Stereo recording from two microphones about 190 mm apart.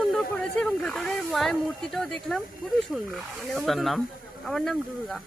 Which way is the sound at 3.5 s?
Centre (ahead or behind).